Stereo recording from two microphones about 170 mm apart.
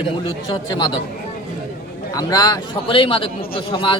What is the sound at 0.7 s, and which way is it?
Speech, 25° left (ahead or behind).